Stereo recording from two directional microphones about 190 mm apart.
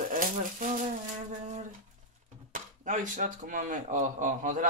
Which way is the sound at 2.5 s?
40° right (ahead or behind).